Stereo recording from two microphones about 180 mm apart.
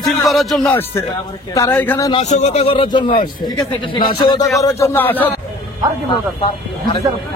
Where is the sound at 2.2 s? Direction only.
40° left (ahead or behind); by 5.3 s 10° left (ahead or behind).